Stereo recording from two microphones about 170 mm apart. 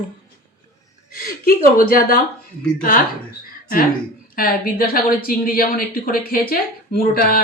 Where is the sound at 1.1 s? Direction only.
60° left (ahead or behind).